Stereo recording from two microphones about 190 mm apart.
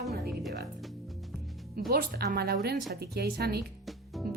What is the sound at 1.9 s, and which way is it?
A woman's voice, 55° right (ahead or behind).